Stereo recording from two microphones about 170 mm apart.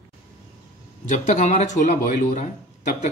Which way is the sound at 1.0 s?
45° left (ahead or behind).